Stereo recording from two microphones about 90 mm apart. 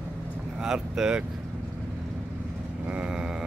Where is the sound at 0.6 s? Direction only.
5° right (ahead or behind).